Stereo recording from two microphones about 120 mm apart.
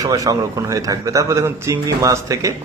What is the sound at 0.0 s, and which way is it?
A man's voice, 30° right (ahead or behind).